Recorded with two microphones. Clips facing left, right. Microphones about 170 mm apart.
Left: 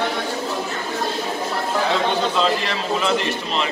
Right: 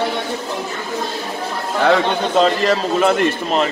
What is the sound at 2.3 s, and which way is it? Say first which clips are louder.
A man's voice: right 6 dB; 45° right (ahead or behind).